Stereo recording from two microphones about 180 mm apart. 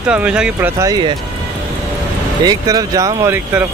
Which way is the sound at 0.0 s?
5° right (ahead or behind).